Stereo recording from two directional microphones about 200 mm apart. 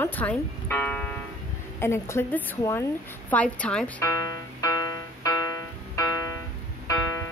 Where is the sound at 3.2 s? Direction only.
5° left (ahead or behind).